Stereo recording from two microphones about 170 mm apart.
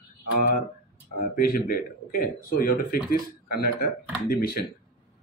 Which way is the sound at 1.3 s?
60° left (ahead or behind).